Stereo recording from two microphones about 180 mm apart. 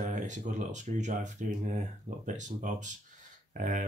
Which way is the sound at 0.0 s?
45° right (ahead or behind).